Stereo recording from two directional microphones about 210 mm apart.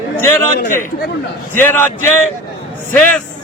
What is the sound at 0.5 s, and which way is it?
Speech, 40° left (ahead or behind).